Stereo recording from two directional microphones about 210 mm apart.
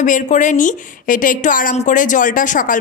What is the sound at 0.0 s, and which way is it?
A woman's voice, 35° left (ahead or behind).